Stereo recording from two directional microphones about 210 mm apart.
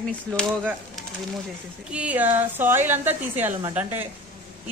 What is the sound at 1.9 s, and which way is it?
A woman's voice, 5° right (ahead or behind).